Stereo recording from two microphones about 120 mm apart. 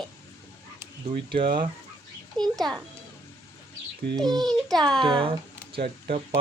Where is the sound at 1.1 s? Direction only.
45° right (ahead or behind).